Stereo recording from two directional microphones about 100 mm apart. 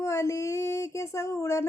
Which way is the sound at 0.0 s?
30° left (ahead or behind).